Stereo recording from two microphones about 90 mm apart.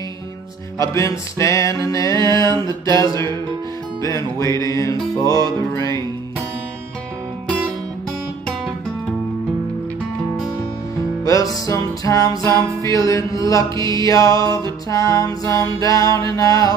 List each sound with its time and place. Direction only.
0.7 s music: 35° left (ahead or behind)
2.2 s mantra: 40° left (ahead or behind)
3.0 s music: 40° left (ahead or behind)
11.2 s music: 40° left (ahead or behind)